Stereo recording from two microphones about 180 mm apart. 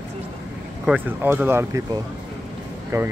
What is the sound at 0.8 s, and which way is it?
Speech, 10° right (ahead or behind).